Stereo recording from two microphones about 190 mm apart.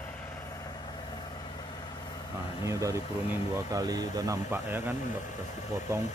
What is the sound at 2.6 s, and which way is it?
Speech, 15° right (ahead or behind).